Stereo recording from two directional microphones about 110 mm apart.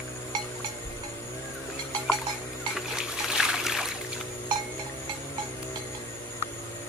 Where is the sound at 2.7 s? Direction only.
5° right (ahead or behind).